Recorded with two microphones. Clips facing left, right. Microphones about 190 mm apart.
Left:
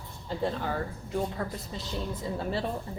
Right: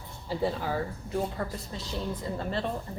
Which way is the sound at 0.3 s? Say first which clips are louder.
Right 1 dB; 5° right (ahead or behind).